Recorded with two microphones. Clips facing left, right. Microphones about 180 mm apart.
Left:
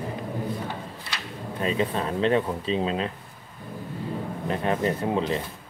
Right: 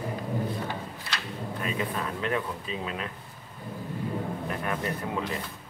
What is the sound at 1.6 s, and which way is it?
Speech, 25° left (ahead or behind).